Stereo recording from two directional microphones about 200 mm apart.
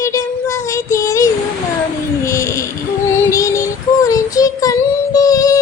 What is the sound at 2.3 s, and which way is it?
Music, 15° left (ahead or behind).